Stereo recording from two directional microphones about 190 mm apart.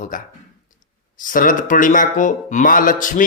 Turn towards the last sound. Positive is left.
turn(degrees=45)  # may be behind; listen again after turning